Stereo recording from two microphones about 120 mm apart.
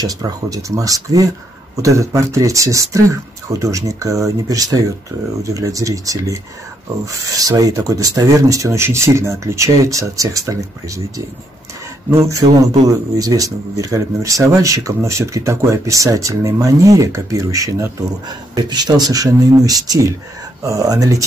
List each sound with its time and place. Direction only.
0.0 s speech: 30° right (ahead or behind)
12.3 s speech: 30° right (ahead or behind)